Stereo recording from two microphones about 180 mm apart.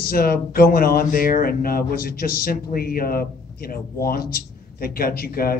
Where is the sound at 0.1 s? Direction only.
55° left (ahead or behind).